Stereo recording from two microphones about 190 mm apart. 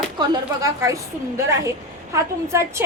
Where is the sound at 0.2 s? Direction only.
15° right (ahead or behind).